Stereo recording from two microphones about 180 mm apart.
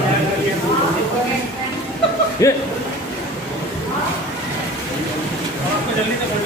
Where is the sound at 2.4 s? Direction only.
15° left (ahead or behind).